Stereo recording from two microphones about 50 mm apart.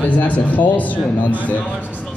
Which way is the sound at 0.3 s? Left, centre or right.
Left.